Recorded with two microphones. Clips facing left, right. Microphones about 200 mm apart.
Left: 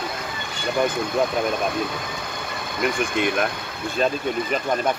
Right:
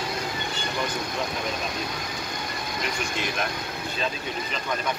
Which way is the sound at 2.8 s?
55° left (ahead or behind).